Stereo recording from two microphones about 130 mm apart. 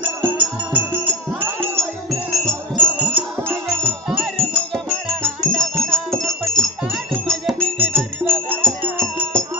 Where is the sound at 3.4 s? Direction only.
15° right (ahead or behind).